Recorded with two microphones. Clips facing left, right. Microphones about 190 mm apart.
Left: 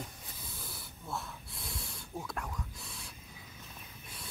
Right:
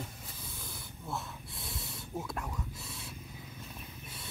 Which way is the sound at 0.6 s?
Centre (ahead or behind).